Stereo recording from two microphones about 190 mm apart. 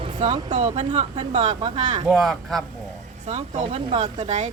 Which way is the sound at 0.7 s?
30° right (ahead or behind).